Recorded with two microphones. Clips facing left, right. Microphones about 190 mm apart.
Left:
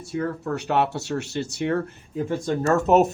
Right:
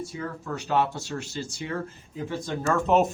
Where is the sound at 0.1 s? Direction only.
65° left (ahead or behind).